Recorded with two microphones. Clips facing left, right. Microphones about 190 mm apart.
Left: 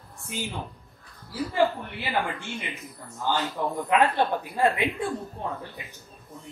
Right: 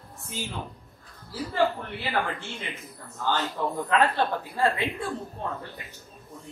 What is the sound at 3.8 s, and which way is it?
A woman's voice, 15° left (ahead or behind).